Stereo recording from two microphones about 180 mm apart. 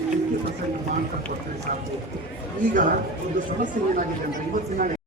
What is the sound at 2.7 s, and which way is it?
Speech, 50° right (ahead or behind).